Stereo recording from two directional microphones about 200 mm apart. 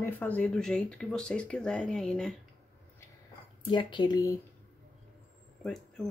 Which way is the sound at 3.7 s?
25° left (ahead or behind).